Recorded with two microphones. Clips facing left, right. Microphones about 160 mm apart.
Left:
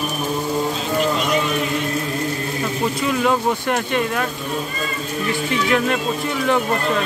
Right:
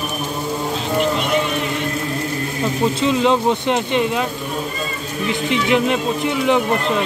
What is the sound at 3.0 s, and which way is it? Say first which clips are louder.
Speech: right 2 dB; 25° right (ahead or behind).